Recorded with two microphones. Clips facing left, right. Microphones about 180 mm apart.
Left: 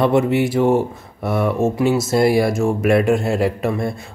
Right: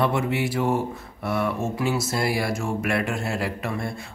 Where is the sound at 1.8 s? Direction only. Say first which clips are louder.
Left 9 dB; 25° left (ahead or behind).